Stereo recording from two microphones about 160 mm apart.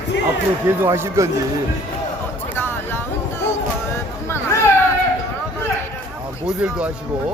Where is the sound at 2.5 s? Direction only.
15° left (ahead or behind).